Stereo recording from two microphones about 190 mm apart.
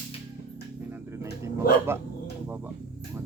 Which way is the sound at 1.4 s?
15° right (ahead or behind).